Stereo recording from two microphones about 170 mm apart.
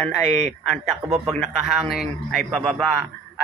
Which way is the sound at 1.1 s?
5° right (ahead or behind).